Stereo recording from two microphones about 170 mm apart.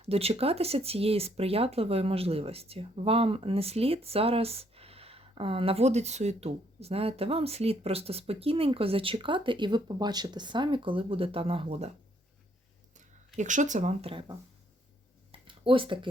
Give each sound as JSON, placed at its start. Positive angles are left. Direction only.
{"t": 0.0, "sound": "speech", "side_deg": -35}
{"t": 13.3, "sound": "speech", "side_deg": -45}
{"t": 15.3, "sound": "a sound", "side_deg": -30}